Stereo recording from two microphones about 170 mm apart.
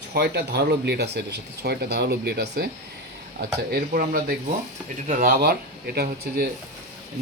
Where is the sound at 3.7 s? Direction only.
60° right (ahead or behind).